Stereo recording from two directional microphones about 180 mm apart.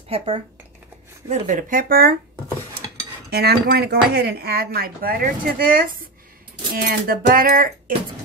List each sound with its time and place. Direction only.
0.1 s speech: 30° right (ahead or behind)
1.3 s speech: 45° right (ahead or behind)
3.3 s speech: 65° right (ahead or behind)